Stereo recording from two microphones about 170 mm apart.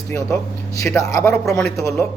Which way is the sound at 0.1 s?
20° left (ahead or behind).